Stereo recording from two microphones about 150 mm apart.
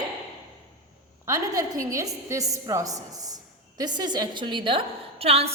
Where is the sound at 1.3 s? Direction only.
25° right (ahead or behind).